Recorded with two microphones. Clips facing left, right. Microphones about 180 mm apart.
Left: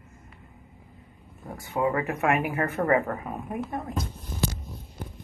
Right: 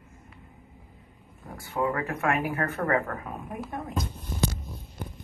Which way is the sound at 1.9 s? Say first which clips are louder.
Left 3 dB; 15° left (ahead or behind).